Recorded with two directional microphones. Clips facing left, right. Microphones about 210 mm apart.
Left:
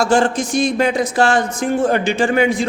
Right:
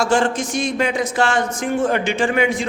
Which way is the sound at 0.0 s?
35° left (ahead or behind).